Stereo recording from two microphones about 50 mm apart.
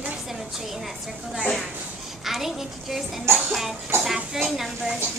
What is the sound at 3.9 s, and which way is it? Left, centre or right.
Speech, right.